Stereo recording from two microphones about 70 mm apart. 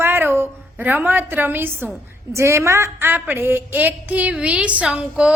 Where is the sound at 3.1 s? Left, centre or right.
Right.